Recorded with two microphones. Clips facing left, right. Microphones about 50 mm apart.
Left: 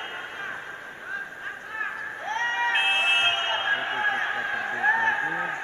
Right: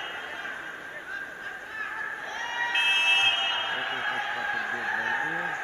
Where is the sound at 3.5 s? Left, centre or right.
Left.